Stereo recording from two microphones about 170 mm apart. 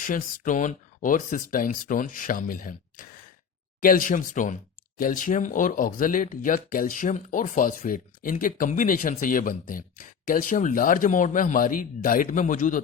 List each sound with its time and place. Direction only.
0.1 s speech: 50° left (ahead or behind)